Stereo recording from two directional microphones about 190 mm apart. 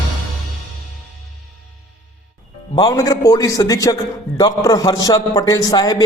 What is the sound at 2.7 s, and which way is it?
A man's voice, 20° left (ahead or behind).